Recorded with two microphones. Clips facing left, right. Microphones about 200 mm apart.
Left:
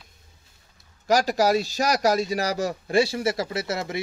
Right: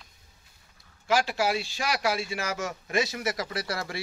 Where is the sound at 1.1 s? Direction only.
40° left (ahead or behind).